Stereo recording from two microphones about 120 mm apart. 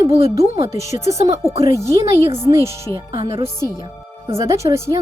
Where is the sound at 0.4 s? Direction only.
50° right (ahead or behind).